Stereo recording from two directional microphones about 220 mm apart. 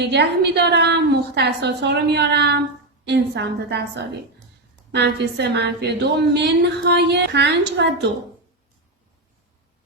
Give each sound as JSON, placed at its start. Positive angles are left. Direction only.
{"t": 0.0, "sound": "a woman's voice", "side_deg": -50}